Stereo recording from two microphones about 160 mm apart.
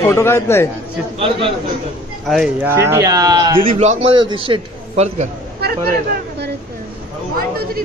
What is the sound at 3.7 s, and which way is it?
Speech, 45° right (ahead or behind).